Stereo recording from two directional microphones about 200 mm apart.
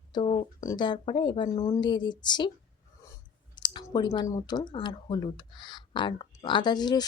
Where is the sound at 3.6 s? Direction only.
20° left (ahead or behind).